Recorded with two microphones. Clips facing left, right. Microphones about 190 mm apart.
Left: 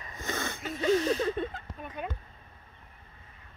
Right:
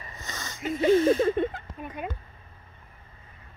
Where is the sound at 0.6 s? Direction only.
15° right (ahead or behind).